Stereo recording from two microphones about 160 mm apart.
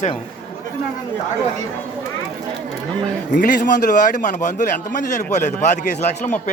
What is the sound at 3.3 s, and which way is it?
A man's voice, 55° left (ahead or behind).